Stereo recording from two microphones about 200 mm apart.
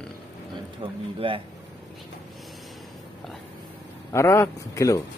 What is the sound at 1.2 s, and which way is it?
Speech, 25° right (ahead or behind).